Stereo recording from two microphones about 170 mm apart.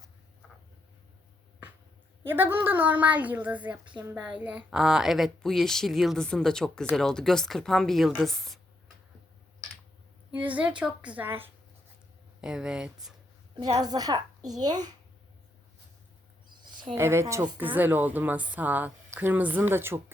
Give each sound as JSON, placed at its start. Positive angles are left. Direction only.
{"t": 2.2, "sound": "a woman's voice", "side_deg": -10}
{"t": 10.3, "sound": "a woman's voice", "side_deg": -10}
{"t": 13.8, "sound": "a woman's voice", "side_deg": -25}
{"t": 16.5, "sound": "a sound", "side_deg": -25}
{"t": 16.9, "sound": "a woman's voice", "side_deg": -15}